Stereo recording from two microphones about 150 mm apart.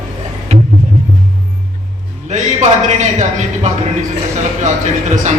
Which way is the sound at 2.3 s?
50° right (ahead or behind).